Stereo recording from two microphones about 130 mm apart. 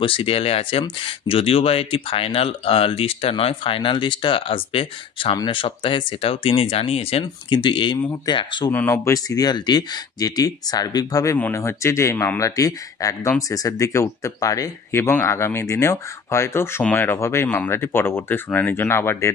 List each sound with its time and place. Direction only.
0.0 s speech: 45° left (ahead or behind)
8.7 s speech: 20° left (ahead or behind)